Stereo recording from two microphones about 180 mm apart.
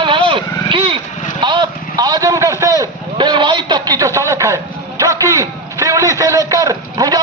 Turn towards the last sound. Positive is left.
turn(degrees=-20)  # may be behind; listen again after turning